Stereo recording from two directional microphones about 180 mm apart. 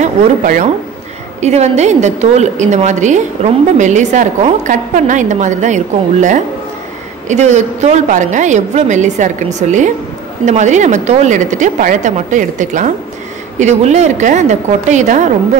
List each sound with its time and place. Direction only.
0.0 s a woman's voice: 40° right (ahead or behind)
7.2 s a woman's voice: 40° right (ahead or behind)